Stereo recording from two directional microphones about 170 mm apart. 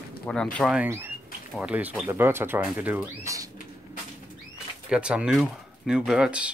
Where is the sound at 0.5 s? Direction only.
5° right (ahead or behind).